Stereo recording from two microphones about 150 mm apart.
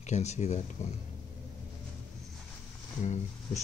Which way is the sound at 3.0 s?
50° left (ahead or behind).